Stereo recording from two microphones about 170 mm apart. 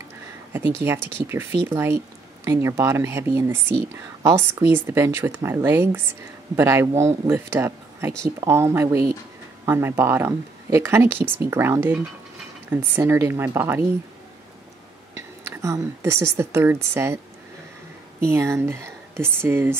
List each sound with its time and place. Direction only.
0.5 s speech: 15° right (ahead or behind)
15.1 s a woman's voice: 15° right (ahead or behind)
18.2 s speech: 15° right (ahead or behind)